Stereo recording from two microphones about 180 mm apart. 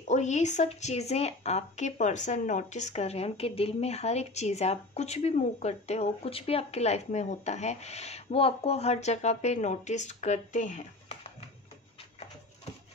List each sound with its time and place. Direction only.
0.1 s speech: 40° left (ahead or behind)